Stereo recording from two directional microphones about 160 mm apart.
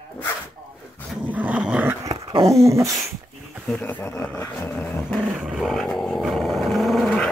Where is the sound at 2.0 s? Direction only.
25° right (ahead or behind).